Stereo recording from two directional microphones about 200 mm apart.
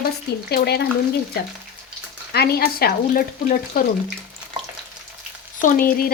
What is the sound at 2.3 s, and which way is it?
Speech, 50° left (ahead or behind).